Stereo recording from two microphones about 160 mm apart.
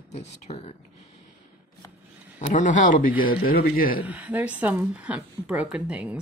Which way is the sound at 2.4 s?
50° left (ahead or behind).